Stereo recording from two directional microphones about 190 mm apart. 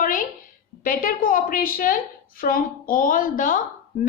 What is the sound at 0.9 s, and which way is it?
A woman's voice, 45° left (ahead or behind).